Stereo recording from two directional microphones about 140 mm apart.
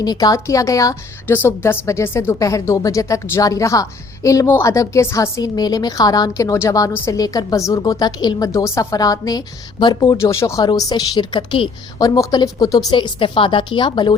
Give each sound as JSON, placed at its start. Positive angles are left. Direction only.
{"t": 0.0, "sound": "a woman's voice", "side_deg": 25}
{"t": 11.9, "sound": "speech", "side_deg": 25}